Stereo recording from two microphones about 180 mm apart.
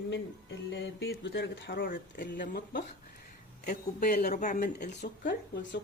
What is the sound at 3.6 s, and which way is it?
Speech, 55° left (ahead or behind).